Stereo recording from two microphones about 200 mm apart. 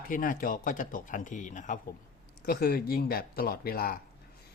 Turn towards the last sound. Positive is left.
turn(degrees=45)  # may be behind; listen again after turning